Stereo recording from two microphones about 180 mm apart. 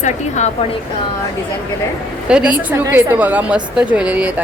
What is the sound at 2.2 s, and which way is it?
A woman's voice, 5° right (ahead or behind).